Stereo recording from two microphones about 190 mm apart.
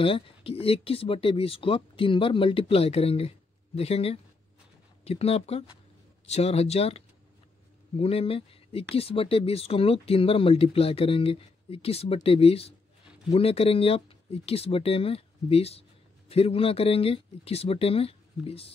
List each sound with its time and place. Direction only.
0.0 s speech: 30° left (ahead or behind)